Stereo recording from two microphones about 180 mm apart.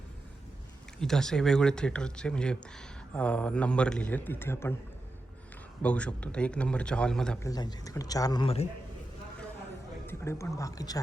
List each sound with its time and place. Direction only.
0.9 s speech: 5° left (ahead or behind)
5.8 s speech: 5° left (ahead or behind)
7.3 s speech: 20° left (ahead or behind)
10.1 s speech: 15° left (ahead or behind)